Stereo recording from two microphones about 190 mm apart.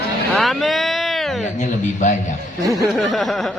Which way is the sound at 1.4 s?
40° left (ahead or behind).